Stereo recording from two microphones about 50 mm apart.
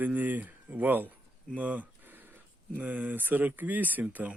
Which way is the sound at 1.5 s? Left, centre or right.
Right.